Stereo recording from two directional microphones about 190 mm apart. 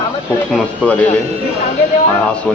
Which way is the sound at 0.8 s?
10° left (ahead or behind).